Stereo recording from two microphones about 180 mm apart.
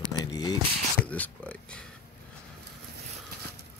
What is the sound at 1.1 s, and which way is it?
Speech, 5° left (ahead or behind).